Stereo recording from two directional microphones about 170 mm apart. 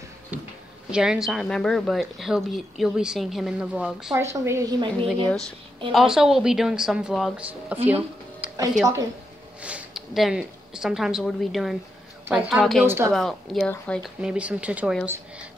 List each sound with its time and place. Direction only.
0.3 s a sound: 10° right (ahead or behind)
0.9 s a woman's voice: 5° right (ahead or behind)
4.1 s speech: 15° right (ahead or behind)
4.9 s a woman's voice: centre (ahead or behind)
8.4 s music: 10° right (ahead or behind)
9.6 s a woman's voice: 5° right (ahead or behind)
12.8 s speech: 15° right (ahead or behind)
13.1 s a woman's voice: centre (ahead or behind)
14.2 s speech: 5° right (ahead or behind)